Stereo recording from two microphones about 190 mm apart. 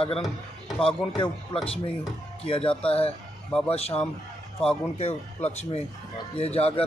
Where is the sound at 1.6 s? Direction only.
30° left (ahead or behind).